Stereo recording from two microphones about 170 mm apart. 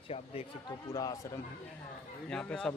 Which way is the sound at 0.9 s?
20° left (ahead or behind).